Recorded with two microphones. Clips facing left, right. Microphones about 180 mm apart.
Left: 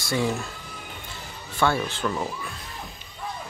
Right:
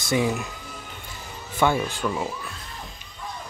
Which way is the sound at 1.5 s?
15° right (ahead or behind).